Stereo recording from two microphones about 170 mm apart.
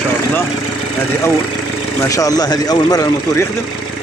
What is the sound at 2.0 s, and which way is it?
Speech, 20° left (ahead or behind).